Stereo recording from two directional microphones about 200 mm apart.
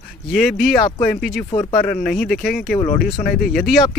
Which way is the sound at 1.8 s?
5° left (ahead or behind).